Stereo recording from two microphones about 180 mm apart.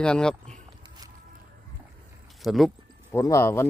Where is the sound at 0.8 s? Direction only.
25° right (ahead or behind).